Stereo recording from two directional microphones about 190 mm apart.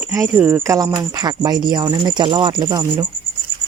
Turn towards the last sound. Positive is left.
turn(degrees=-20)  # may be behind; listen again after turning